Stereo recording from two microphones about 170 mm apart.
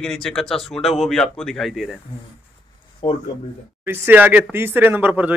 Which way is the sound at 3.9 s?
10° right (ahead or behind).